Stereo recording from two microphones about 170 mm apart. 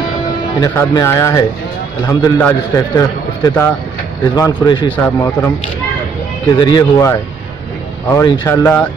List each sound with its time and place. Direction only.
0.6 s a man's voice: 20° left (ahead or behind)
4.9 s a man's voice: 10° left (ahead or behind)
6.5 s a man's voice: 25° left (ahead or behind)